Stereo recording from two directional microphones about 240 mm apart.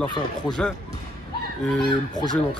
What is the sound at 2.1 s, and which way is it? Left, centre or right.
Speech, centre.